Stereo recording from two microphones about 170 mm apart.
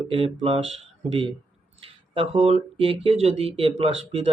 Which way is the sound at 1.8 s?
35° right (ahead or behind).